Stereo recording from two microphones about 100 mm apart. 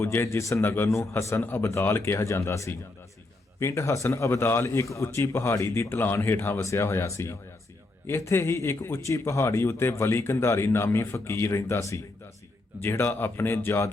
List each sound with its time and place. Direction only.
0.0 s speech: 25° left (ahead or behind)